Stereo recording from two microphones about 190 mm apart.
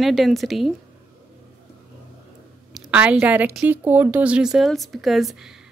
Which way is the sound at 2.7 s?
5° right (ahead or behind).